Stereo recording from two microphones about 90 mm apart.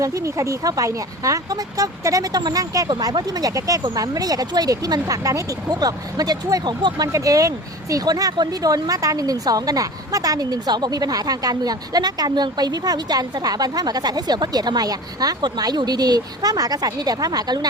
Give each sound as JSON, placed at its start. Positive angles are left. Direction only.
{"t": 0.0, "sound": "speech", "side_deg": -35}
{"t": 7.1, "sound": "speech", "side_deg": -40}